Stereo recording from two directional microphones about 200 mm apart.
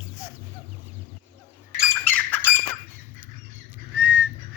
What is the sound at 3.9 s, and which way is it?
Whistle, 10° right (ahead or behind).